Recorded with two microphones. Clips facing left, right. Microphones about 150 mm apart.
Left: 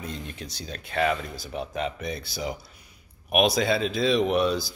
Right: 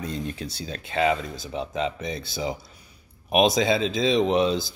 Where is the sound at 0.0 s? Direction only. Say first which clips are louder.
Right 5 dB; 35° right (ahead or behind).